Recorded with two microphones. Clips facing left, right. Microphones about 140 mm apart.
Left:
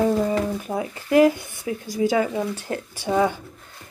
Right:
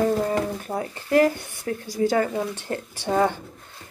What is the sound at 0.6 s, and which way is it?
Speech, 10° left (ahead or behind).